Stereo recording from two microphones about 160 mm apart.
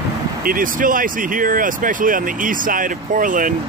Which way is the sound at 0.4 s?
60° right (ahead or behind).